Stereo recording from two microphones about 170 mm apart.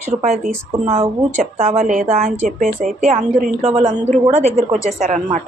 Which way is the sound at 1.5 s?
40° right (ahead or behind).